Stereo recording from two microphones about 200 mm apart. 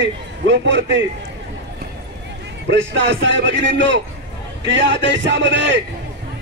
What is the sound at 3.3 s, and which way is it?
A man's voice, 65° right (ahead or behind).